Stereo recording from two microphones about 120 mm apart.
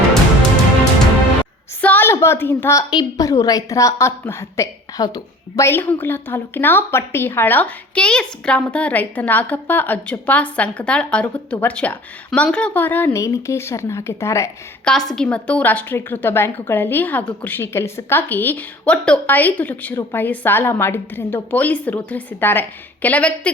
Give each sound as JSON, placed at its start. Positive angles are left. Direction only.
{"t": 1.8, "sound": "a woman's voice", "side_deg": 15}
{"t": 2.9, "sound": "a woman's voice", "side_deg": 35}
{"t": 5.6, "sound": "a woman's voice", "side_deg": 15}
{"t": 14.8, "sound": "a woman's voice", "side_deg": 5}